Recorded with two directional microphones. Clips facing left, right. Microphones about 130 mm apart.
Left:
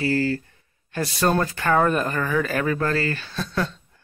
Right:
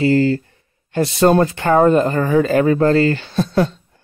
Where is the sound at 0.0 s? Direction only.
25° right (ahead or behind).